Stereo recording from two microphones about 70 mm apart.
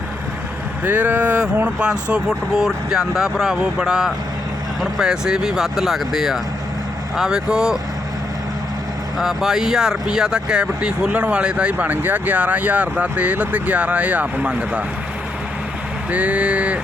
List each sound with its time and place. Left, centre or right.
0.9 s speech: right; by 7.8 s centre
9.1 s speech: centre
16.1 s speech: centre